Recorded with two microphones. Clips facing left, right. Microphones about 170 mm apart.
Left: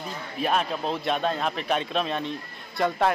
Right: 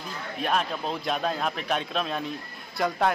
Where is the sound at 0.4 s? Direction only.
Centre (ahead or behind).